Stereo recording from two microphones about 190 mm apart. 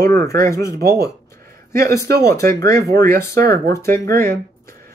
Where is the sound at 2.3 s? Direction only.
15° left (ahead or behind).